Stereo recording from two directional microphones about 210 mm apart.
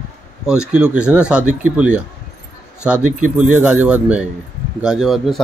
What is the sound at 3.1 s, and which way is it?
Speech, 35° right (ahead or behind).